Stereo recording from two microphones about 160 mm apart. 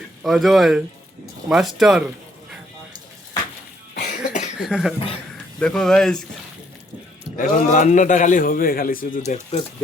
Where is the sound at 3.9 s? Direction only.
50° left (ahead or behind).